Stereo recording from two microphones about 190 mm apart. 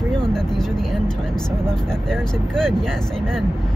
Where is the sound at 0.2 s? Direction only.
5° left (ahead or behind).